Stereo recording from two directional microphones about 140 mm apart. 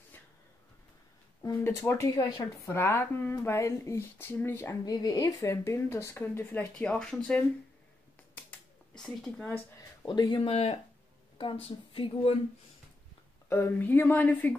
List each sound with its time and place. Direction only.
1.4 s a woman's voice: 25° left (ahead or behind); by 7.2 s 5° left (ahead or behind)
8.4 s finger snapping: 15° left (ahead or behind)
9.0 s speech: centre (ahead or behind)
9.8 s speech: 30° left (ahead or behind)
10.4 s speech: 45° left (ahead or behind)
13.5 s a woman's voice: 15° left (ahead or behind)